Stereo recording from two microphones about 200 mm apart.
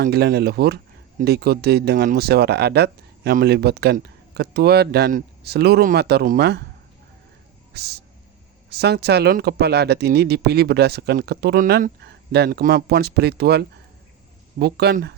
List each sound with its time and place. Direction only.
0.0 s speech: 50° right (ahead or behind)
7.7 s music: 55° right (ahead or behind)
8.7 s speech: 55° right (ahead or behind)
11.9 s speech: 55° right (ahead or behind)